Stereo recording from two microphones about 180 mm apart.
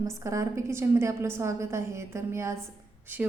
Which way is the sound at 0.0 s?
15° right (ahead or behind).